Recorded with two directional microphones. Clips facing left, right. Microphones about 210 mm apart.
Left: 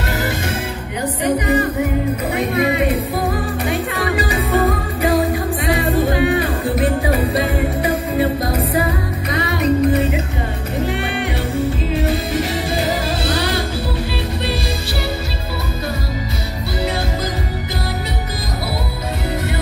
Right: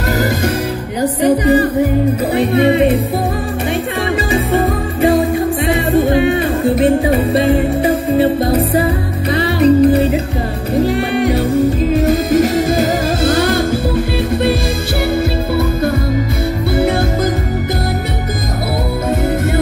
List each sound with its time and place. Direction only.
1.2 s music: 35° right (ahead or behind)
4.3 s music: 30° right (ahead or behind)
5.7 s music: 25° right (ahead or behind); by 13.7 s 50° right (ahead or behind)